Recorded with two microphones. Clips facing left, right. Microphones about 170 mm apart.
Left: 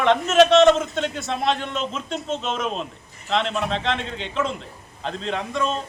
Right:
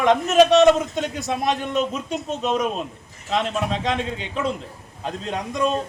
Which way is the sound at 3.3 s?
10° right (ahead or behind).